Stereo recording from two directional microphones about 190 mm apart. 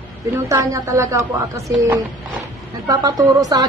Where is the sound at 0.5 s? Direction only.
20° right (ahead or behind).